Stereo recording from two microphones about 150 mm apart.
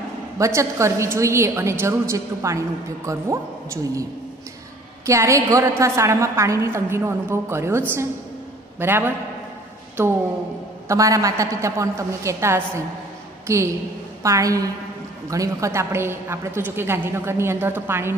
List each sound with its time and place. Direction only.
0.4 s a woman's voice: 20° right (ahead or behind)
5.0 s a woman's voice: 20° right (ahead or behind)
10.9 s a woman's voice: 20° right (ahead or behind)
14.2 s a woman's voice: 20° right (ahead or behind)